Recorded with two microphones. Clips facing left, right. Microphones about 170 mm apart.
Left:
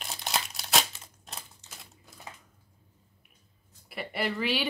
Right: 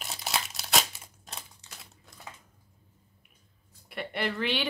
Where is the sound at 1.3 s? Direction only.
Centre (ahead or behind).